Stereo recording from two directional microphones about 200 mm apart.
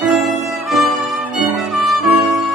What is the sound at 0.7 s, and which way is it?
Music, centre (ahead or behind).